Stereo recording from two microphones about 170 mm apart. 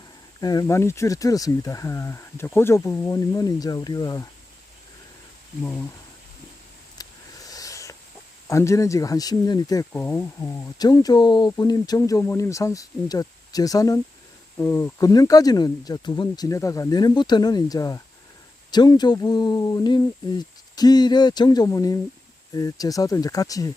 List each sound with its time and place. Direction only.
0.3 s speech: 20° left (ahead or behind)
7.0 s a sound: 20° left (ahead or behind)
8.4 s speech: 15° left (ahead or behind)